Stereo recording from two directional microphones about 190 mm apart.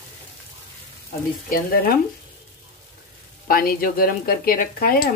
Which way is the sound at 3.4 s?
50° left (ahead or behind).